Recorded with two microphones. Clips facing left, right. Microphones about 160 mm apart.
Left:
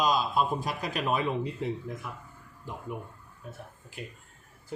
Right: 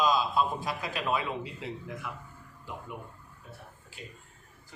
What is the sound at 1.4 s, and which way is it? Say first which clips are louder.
Speech: left 6 dB; 45° left (ahead or behind).